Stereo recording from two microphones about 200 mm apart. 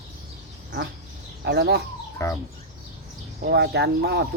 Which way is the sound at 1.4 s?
55° right (ahead or behind).